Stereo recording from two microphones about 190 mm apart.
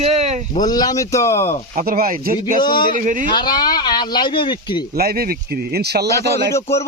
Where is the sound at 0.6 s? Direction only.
20° left (ahead or behind).